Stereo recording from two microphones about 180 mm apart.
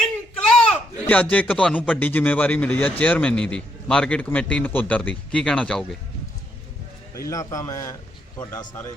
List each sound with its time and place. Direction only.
0.0 s speech: 5° left (ahead or behind)
7.3 s a man's voice: 20° left (ahead or behind)